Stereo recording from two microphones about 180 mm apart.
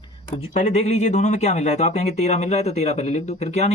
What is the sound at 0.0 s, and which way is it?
Speech, 35° left (ahead or behind).